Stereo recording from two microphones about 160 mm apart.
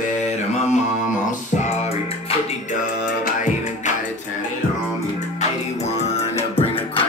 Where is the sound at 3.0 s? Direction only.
50° left (ahead or behind).